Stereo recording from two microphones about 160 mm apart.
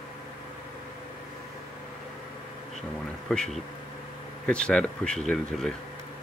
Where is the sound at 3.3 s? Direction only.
5° left (ahead or behind).